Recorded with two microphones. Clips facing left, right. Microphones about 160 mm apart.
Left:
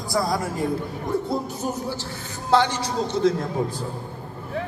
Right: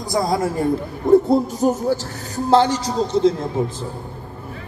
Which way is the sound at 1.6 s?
45° right (ahead or behind).